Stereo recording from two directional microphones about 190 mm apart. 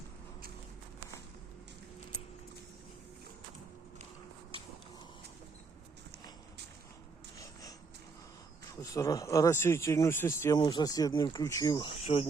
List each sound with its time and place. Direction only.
8.7 s speech: 15° left (ahead or behind); by 12.3 s 35° left (ahead or behind)